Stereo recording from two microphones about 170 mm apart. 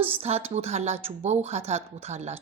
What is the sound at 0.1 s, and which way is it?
A woman's voice, 40° right (ahead or behind).